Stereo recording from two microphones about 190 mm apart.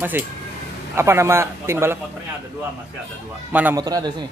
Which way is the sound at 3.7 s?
20° right (ahead or behind).